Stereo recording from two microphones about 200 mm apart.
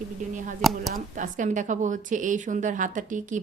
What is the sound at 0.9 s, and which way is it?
A woman's voice, 40° right (ahead or behind).